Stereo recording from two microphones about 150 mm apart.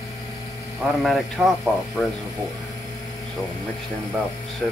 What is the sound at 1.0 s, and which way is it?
Speech, centre (ahead or behind).